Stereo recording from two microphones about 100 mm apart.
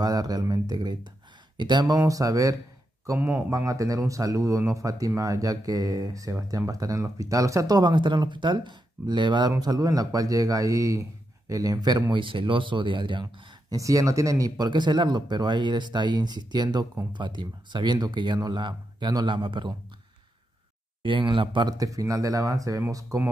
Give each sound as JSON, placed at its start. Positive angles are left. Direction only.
{"t": 0.0, "sound": "speech", "side_deg": -40}
{"t": 3.2, "sound": "speech", "side_deg": -20}
{"t": 3.4, "sound": "speech", "side_deg": -35}
{"t": 9.6, "sound": "speech", "side_deg": -40}
{"t": 13.7, "sound": "speech", "side_deg": -35}
{"t": 14.7, "sound": "speech", "side_deg": -50}
{"t": 21.0, "sound": "speech", "side_deg": -55}
{"t": 21.7, "sound": "speech", "side_deg": -35}